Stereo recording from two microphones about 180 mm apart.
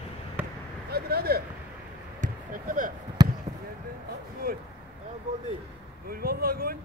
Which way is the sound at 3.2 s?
25° right (ahead or behind).